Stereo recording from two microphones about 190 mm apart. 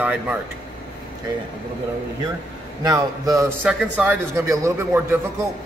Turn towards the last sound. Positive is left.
turn(degrees=-15)  # may be behind; listen again after turning